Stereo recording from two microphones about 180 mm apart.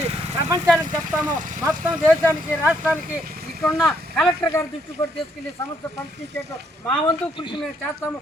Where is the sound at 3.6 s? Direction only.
10° left (ahead or behind).